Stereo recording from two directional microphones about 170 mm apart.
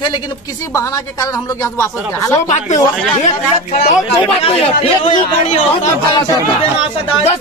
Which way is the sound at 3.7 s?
40° left (ahead or behind).